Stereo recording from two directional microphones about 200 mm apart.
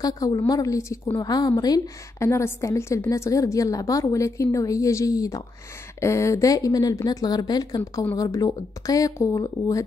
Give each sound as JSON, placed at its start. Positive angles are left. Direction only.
{"t": 0.0, "sound": "a woman's voice", "side_deg": 20}